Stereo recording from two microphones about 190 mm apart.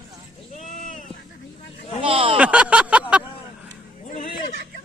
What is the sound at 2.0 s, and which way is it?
Speech, 30° right (ahead or behind).